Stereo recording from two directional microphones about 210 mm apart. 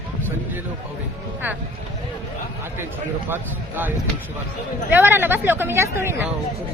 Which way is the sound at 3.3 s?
10° right (ahead or behind).